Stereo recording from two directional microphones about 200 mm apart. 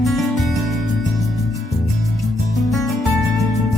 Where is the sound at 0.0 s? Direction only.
Centre (ahead or behind).